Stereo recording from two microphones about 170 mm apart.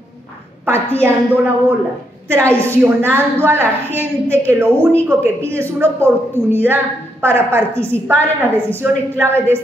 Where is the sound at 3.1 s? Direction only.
15° right (ahead or behind).